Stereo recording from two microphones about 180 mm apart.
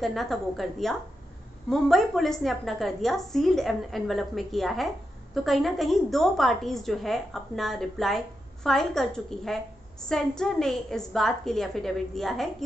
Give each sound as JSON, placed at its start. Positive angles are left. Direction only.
{"t": 0.0, "sound": "a woman's voice", "side_deg": 0}